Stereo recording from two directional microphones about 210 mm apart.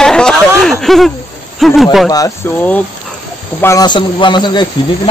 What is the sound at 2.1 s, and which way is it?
A man's voice, 15° left (ahead or behind).